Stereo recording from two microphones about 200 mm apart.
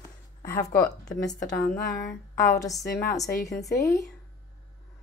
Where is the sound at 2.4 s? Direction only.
15° left (ahead or behind).